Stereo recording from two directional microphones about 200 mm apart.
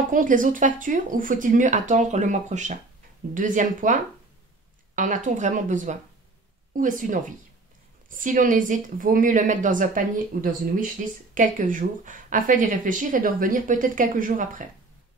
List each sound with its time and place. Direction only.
0.1 s a woman's voice: 40° right (ahead or behind)